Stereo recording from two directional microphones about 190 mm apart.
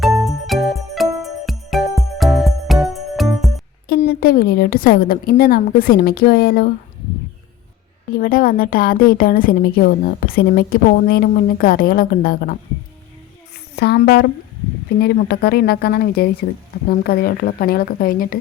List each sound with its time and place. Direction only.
0.0 s music: centre (ahead or behind)
3.8 s a woman's voice: 55° left (ahead or behind)
8.1 s a woman's voice: 50° left (ahead or behind)
13.7 s a woman's voice: 55° left (ahead or behind)